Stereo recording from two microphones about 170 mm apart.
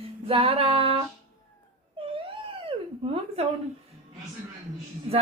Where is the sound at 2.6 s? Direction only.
35° right (ahead or behind).